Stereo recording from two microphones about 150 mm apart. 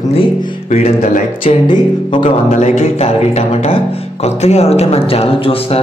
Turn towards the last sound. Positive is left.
turn(degrees=40)  # may be behind; listen again after turning